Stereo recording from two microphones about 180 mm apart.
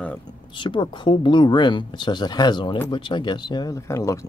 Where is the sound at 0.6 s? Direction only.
25° left (ahead or behind).